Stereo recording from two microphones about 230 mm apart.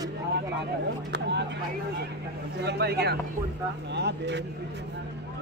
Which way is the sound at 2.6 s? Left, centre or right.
Right.